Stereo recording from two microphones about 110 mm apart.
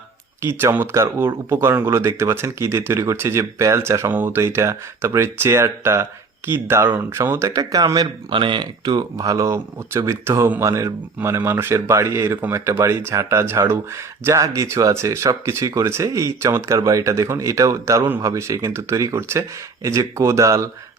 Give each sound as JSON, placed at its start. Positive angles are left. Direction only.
{"t": 0.4, "sound": "speech", "side_deg": -20}